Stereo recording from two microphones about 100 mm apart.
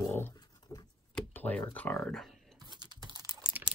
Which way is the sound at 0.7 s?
30° left (ahead or behind).